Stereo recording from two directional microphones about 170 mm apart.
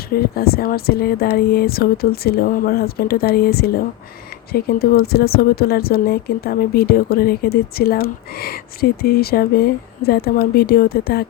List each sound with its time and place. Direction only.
0.1 s speech: 65° left (ahead or behind)